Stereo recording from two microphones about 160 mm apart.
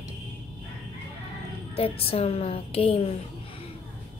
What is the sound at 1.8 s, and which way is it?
A woman's voice, 35° left (ahead or behind).